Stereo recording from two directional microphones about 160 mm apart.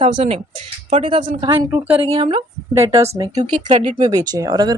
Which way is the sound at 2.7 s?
20° right (ahead or behind).